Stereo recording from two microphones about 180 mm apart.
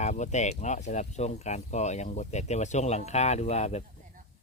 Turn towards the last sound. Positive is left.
turn(degrees=40)  # may be behind; listen again after turning